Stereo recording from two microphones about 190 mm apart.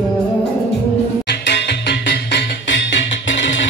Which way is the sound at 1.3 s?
60° left (ahead or behind).